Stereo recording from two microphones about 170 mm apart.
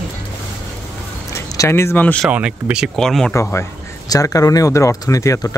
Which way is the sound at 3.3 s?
15° left (ahead or behind).